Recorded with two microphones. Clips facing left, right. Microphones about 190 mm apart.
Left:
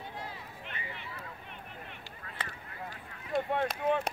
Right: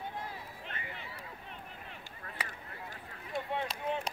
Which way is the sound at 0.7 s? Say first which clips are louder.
Left 2 dB; 35° right (ahead or behind).